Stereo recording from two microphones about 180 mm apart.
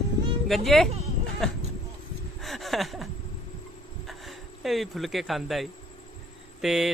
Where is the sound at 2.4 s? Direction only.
Centre (ahead or behind).